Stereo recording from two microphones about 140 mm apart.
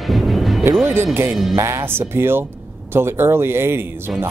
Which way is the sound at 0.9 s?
15° right (ahead or behind).